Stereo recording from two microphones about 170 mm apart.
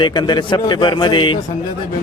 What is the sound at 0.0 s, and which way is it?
A man's voice, 25° left (ahead or behind).